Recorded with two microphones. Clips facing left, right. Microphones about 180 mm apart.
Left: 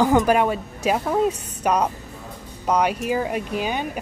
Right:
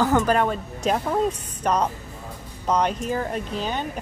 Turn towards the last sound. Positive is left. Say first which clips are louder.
# left 2 dB
turn(degrees=10)  # may be behind; listen again after turning